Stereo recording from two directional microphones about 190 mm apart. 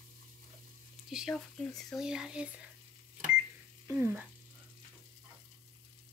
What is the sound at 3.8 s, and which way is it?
Speech, 10° right (ahead or behind).